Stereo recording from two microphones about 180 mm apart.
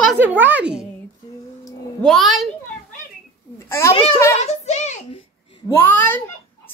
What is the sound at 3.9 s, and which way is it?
Speech, 30° left (ahead or behind).